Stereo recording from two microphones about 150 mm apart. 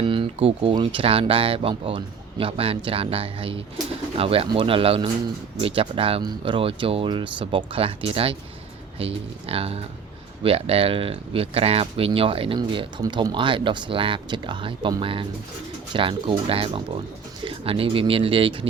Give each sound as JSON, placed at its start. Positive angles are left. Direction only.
{"t": 0.0, "sound": "speech", "side_deg": -35}